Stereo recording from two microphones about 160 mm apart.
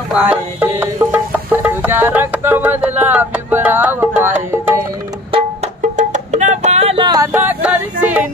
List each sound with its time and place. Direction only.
0.1 s music: 10° right (ahead or behind)
5.3 s music: 45° right (ahead or behind)
7.3 s music: 10° right (ahead or behind)